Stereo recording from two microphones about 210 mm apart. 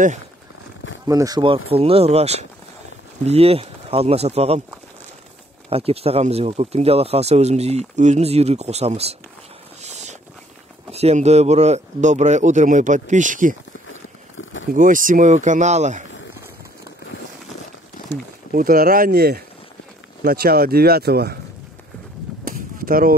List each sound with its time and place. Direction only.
1.0 s speech: 15° right (ahead or behind)
5.7 s speech: 30° right (ahead or behind)
9.8 s vehicle: 30° right (ahead or behind)
10.9 s a man's voice: 30° right (ahead or behind)
14.7 s a man's voice: 40° right (ahead or behind)
18.1 s speech: 40° right (ahead or behind)
22.4 s a sound: 45° right (ahead or behind)